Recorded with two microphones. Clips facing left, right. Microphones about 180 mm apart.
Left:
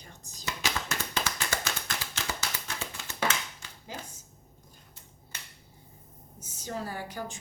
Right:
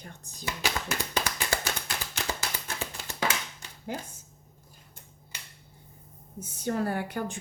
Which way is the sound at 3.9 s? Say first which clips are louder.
Right 6 dB; 55° right (ahead or behind).